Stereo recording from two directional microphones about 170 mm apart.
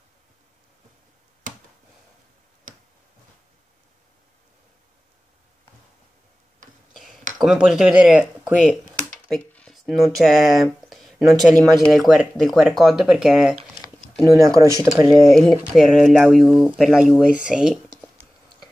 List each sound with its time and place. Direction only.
1.5 s a sound: 50° right (ahead or behind)
6.9 s a sound: centre (ahead or behind)
7.3 s speech: 5° right (ahead or behind)
9.4 s speech: 5° left (ahead or behind)
14.2 s speech: 20° right (ahead or behind)
15.7 s speech: centre (ahead or behind)